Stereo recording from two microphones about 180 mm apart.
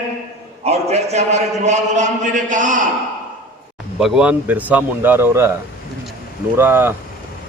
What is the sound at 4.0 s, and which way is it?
Speech, 5° right (ahead or behind).